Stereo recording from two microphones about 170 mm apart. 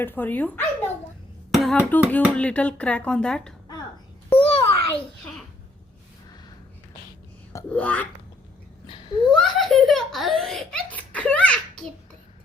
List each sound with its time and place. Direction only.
0.0 s speech: 10° left (ahead or behind)
1.5 s a sound: centre (ahead or behind)
1.7 s speech: 10° left (ahead or behind)
4.4 s a sound: 35° left (ahead or behind)
7.7 s speech: 10° left (ahead or behind)
9.3 s giggle: centre (ahead or behind)